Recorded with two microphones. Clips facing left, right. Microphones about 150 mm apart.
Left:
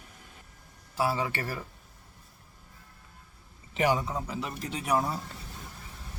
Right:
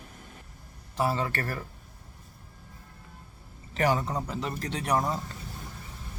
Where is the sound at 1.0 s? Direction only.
5° left (ahead or behind).